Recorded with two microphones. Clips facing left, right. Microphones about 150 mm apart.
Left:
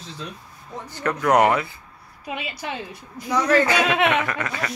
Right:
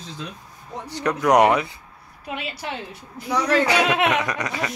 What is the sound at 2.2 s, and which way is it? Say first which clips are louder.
Speech: even; 5° left (ahead or behind).